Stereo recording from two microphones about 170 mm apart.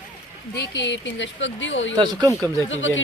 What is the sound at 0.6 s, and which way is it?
Speech, 90° left.